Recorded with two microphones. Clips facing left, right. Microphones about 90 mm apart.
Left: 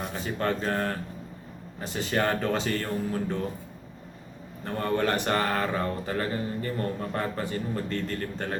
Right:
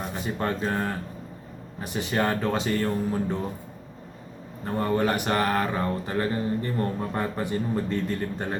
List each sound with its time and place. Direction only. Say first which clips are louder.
0.3 s speech: even; 10° right (ahead or behind)
4.6 s speech: right 2 dB; 10° right (ahead or behind)
5.7 s speech: right 2 dB; 25° right (ahead or behind)